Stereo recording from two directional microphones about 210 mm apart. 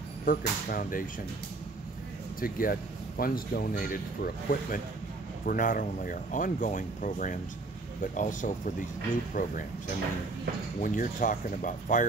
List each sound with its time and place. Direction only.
0.2 s speech: 40° left (ahead or behind)
2.4 s speech: 45° left (ahead or behind)
10.8 s speech: 40° left (ahead or behind)